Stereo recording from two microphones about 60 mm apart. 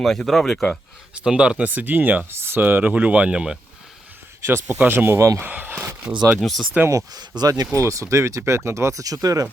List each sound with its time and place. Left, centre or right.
0.0 s speech: centre
1.1 s speech: centre
1.6 s speech: right; by 3.6 s centre
4.8 s speech: right
5.4 s speech: right
6.4 s speech: centre
6.9 s speech: right
7.8 s speech: right
8.1 s speech: right